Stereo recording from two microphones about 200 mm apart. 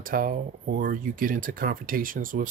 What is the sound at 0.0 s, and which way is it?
Speech, 45° right (ahead or behind).